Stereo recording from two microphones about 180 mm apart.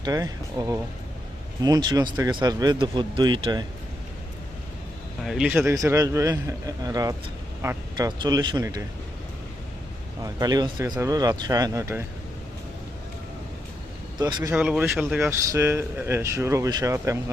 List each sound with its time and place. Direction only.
0.0 s speech: 20° right (ahead or behind)
5.2 s speech: 5° right (ahead or behind); by 8.8 s 20° right (ahead or behind)
10.2 s speech: 20° right (ahead or behind)
14.2 s speech: 25° right (ahead or behind)
14.5 s speech: 5° right (ahead or behind)